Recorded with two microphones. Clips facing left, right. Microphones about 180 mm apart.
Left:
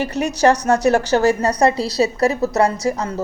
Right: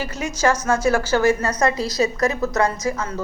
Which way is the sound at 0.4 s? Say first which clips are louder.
Left 4 dB; 35° left (ahead or behind).